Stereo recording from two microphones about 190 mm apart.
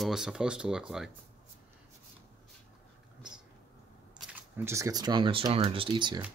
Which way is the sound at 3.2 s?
5° right (ahead or behind).